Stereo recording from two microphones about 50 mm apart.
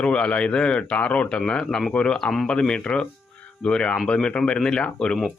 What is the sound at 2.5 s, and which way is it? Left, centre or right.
Speech, centre.